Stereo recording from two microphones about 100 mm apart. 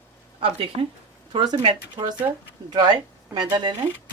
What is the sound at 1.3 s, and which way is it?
Speech, 45° right (ahead or behind).